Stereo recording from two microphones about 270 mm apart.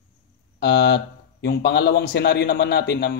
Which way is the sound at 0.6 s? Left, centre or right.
Left.